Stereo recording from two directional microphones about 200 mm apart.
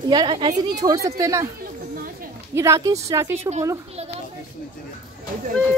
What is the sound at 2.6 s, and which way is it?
Speech, 15° right (ahead or behind).